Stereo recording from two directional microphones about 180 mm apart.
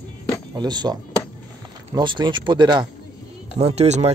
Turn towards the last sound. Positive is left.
turn(degrees=-35)  # may be behind; listen again after turning